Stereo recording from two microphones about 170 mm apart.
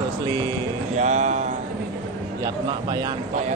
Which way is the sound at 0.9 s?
45° right (ahead or behind).